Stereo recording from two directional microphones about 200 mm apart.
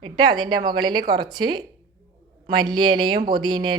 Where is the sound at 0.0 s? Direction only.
20° right (ahead or behind).